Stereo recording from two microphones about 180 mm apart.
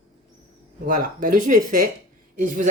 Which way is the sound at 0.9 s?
50° right (ahead or behind).